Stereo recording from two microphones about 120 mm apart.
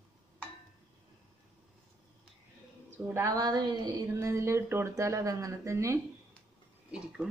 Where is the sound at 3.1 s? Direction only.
25° right (ahead or behind).